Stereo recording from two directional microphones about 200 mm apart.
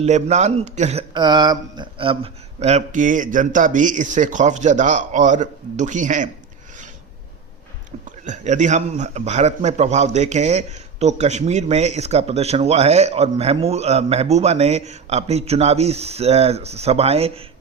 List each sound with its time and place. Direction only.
0.0 s a man's voice: 35° right (ahead or behind)
1.1 s a man's voice: 20° right (ahead or behind); by 6.3 s 40° right (ahead or behind)
8.2 s a man's voice: 35° right (ahead or behind)